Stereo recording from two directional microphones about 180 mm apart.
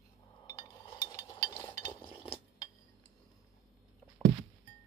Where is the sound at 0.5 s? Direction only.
20° left (ahead or behind).